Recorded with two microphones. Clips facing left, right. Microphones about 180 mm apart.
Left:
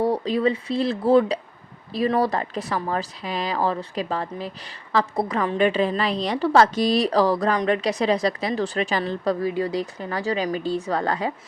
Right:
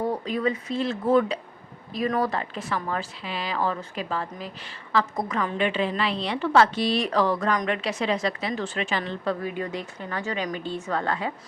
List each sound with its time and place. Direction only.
0.0 s a woman's voice: 35° left (ahead or behind)